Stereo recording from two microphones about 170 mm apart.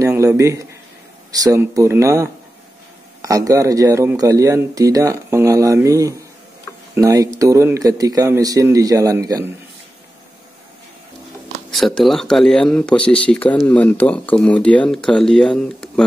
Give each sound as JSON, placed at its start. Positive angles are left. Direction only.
{"t": 0.0, "sound": "a sound", "side_deg": -15}
{"t": 0.4, "sound": "a man's voice", "side_deg": -20}
{"t": 11.7, "sound": "speech", "side_deg": 0}